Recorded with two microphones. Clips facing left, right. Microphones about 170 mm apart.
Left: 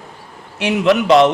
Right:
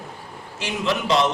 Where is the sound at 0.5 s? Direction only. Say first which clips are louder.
Left 10 dB; 65° left (ahead or behind).